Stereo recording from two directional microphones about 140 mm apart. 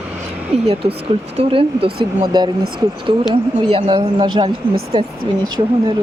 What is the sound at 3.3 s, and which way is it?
Speech, 40° right (ahead or behind).